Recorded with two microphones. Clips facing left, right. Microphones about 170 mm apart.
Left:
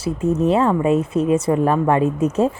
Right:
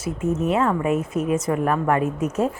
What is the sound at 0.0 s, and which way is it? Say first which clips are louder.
Speech: left 5 dB; 30° left (ahead or behind).